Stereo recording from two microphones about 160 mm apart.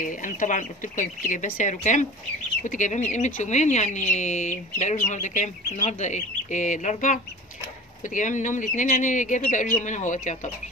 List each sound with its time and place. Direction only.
0.0 s speech: 55° left (ahead or behind)